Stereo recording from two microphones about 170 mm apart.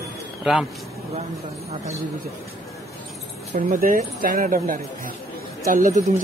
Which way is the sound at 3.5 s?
55° right (ahead or behind).